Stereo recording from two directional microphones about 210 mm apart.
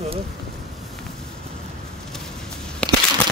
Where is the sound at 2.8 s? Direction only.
5° left (ahead or behind).